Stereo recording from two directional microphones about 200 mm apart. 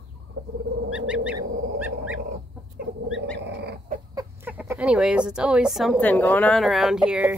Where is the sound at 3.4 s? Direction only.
55° right (ahead or behind).